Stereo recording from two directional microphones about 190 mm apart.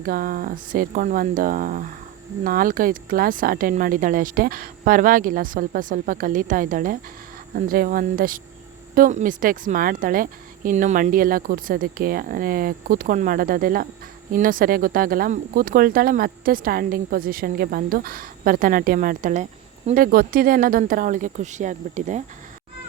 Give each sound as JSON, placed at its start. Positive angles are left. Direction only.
{"t": 0.0, "sound": "speech", "side_deg": -50}